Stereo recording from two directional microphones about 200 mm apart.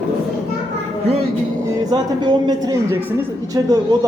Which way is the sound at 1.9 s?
20° right (ahead or behind).